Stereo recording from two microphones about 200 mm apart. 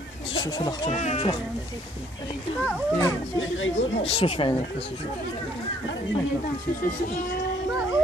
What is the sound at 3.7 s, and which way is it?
Speech, 30° left (ahead or behind).